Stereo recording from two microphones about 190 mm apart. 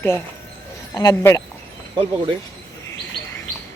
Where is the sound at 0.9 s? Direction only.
15° left (ahead or behind).